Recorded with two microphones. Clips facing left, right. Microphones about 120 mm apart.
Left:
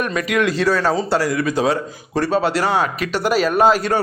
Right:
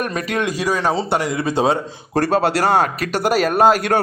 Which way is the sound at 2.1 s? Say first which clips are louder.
Right 1 dB; 45° right (ahead or behind).